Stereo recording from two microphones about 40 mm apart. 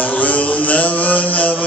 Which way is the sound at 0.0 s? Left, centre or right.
Left.